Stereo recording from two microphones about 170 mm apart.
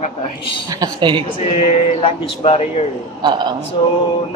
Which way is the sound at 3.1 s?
25° right (ahead or behind).